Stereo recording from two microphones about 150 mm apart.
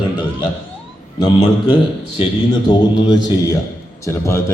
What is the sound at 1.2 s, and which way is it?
A man's voice, 30° left (ahead or behind).